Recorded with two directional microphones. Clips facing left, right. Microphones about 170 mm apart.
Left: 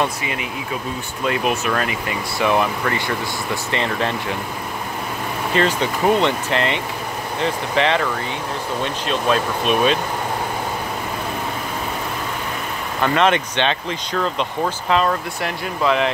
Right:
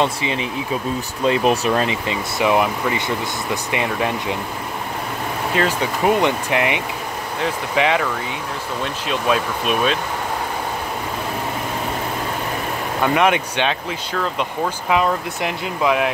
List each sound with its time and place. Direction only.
0.0 s speech: 25° right (ahead or behind)
1.7 s speech: 25° right (ahead or behind)
5.5 s speech: 5° right (ahead or behind)
13.0 s speech: 10° right (ahead or behind)
15.0 s speech: 15° right (ahead or behind)